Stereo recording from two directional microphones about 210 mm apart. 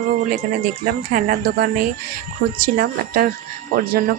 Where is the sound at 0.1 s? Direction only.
40° right (ahead or behind).